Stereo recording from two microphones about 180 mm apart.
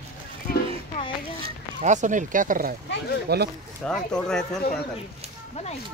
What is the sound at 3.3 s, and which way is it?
Speech, 60° right (ahead or behind).